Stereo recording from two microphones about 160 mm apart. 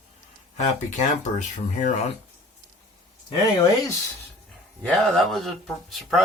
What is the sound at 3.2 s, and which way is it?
Speech, 25° left (ahead or behind).